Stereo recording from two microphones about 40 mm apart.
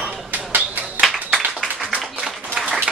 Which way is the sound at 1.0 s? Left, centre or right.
Right.